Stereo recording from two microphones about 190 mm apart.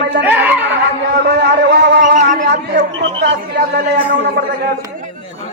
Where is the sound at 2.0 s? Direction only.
40° right (ahead or behind).